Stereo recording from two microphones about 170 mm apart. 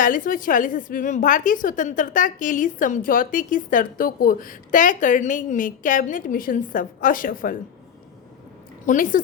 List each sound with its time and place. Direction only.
0.0 s a woman's voice: 50° left (ahead or behind)
8.9 s a woman's voice: 50° left (ahead or behind)